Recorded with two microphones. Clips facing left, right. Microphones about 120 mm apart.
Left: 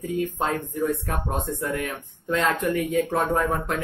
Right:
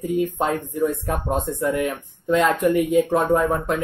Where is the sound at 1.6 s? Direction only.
20° right (ahead or behind).